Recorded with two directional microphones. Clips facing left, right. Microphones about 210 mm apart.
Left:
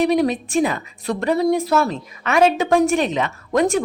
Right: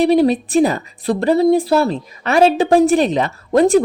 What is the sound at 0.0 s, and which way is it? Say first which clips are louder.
A woman's voice: right 5 dB; 30° right (ahead or behind).